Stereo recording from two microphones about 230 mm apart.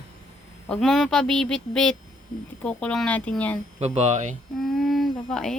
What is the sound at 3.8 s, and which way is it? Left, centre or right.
Speech, right.